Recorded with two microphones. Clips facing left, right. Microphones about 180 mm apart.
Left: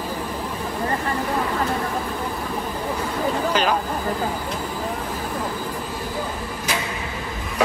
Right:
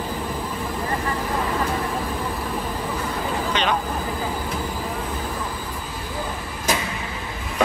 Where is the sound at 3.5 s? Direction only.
Centre (ahead or behind).